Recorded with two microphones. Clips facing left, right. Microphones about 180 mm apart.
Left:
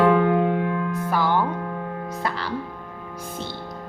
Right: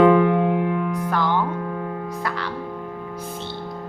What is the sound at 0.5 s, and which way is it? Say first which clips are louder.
Music: right 2 dB; 15° right (ahead or behind).